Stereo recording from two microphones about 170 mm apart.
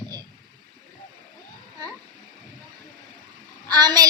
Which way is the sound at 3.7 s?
25° right (ahead or behind).